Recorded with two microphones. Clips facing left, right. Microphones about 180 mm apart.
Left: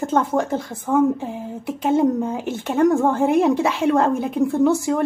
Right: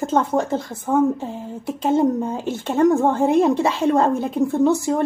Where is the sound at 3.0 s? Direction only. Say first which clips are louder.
Even; 15° right (ahead or behind).